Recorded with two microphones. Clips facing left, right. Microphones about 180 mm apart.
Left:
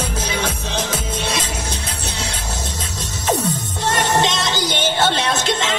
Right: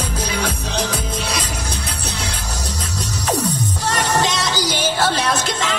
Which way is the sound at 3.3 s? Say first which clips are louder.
Right 3 dB; centre (ahead or behind).